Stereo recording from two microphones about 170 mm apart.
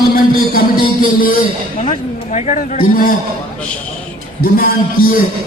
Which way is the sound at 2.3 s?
40° left (ahead or behind).